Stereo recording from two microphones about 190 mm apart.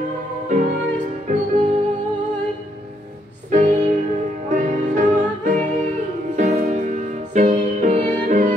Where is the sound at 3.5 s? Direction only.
40° right (ahead or behind).